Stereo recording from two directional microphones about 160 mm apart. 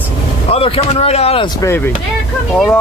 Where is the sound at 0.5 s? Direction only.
35° left (ahead or behind).